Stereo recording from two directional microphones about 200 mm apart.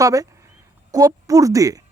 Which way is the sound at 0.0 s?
15° right (ahead or behind).